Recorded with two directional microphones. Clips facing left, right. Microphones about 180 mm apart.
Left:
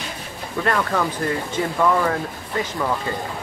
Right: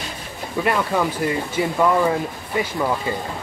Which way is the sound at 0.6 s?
10° right (ahead or behind).